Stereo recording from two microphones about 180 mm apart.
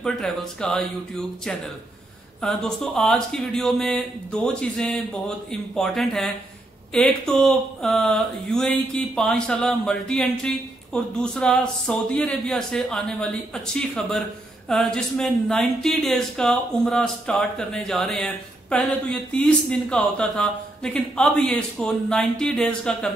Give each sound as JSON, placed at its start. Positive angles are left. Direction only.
{"t": 0.0, "sound": "speech", "side_deg": 5}